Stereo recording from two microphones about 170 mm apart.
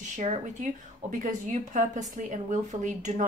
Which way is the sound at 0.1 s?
45° right (ahead or behind).